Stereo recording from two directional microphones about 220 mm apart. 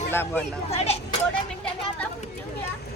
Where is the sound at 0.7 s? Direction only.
30° left (ahead or behind).